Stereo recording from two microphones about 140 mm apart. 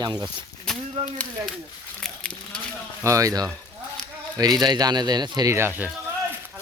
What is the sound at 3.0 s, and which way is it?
Speech, 20° right (ahead or behind).